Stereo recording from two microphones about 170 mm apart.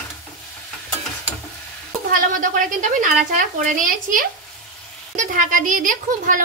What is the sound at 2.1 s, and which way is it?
A woman's voice, 50° right (ahead or behind).